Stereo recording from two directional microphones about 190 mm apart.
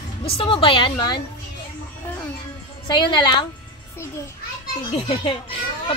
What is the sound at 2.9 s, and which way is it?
Speech, 25° left (ahead or behind).